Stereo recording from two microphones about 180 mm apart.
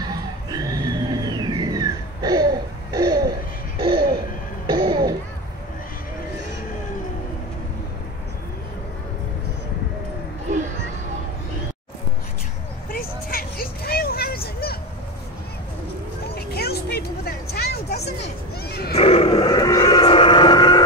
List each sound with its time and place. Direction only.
0.5 s music: 20° right (ahead or behind)
4.6 s music: 25° right (ahead or behind)
12.9 s vehicle: 55° left (ahead or behind)
16.3 s music: 60° left (ahead or behind)
18.7 s wild animals: 60° left (ahead or behind)
18.9 s a sound: 35° left (ahead or behind)